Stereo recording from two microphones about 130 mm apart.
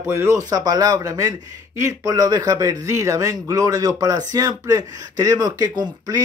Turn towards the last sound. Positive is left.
turn(degrees=-30)  # may be behind; listen again after turning